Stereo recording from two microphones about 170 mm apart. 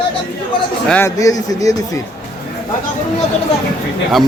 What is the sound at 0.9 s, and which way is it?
Speech, 15° left (ahead or behind).